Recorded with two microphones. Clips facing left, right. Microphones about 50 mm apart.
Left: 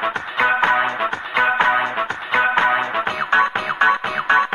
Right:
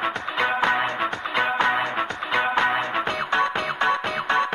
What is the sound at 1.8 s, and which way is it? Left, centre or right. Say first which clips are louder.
Music: left 3 dB; left.